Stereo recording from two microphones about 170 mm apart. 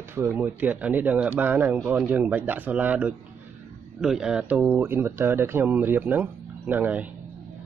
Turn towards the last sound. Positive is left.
turn(degrees=-10)  # may be behind; listen again after turning